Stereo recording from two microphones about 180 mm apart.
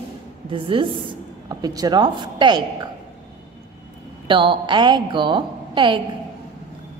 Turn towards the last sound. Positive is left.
turn(degrees=-25)  # may be behind; listen again after turning